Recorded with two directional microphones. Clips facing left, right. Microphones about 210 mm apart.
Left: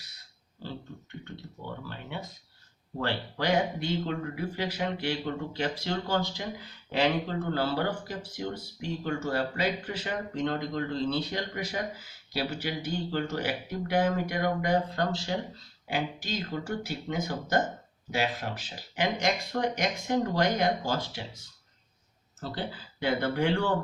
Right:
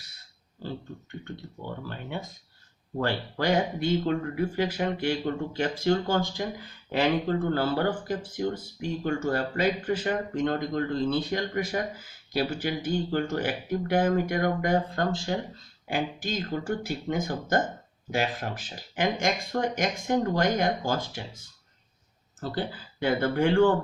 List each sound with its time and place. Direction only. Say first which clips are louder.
1.9 s speech: right 3 dB; 45° right (ahead or behind)
22.4 s speech: right 4 dB; 50° right (ahead or behind)